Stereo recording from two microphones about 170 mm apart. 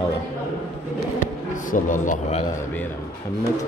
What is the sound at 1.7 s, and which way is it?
Speech, 50° left (ahead or behind).